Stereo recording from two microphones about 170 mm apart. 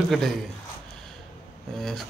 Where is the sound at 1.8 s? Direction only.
Centre (ahead or behind).